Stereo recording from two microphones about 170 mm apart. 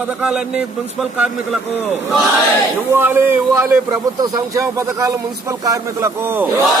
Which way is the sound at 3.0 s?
15° right (ahead or behind).